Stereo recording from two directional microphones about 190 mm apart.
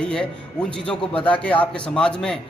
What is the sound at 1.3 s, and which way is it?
A man's voice, 5° left (ahead or behind).